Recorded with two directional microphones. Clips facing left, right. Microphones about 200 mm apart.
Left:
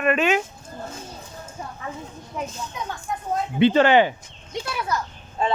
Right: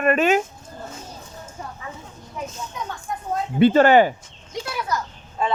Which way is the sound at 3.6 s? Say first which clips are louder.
Right 2 dB; 45° right (ahead or behind).